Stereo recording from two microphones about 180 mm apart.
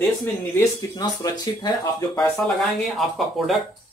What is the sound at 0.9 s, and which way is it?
Speech, 20° left (ahead or behind).